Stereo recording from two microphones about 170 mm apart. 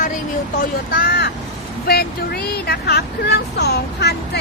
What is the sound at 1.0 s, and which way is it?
Speech, 60° left (ahead or behind).